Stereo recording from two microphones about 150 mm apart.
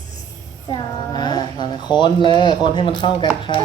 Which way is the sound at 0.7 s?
30° left (ahead or behind).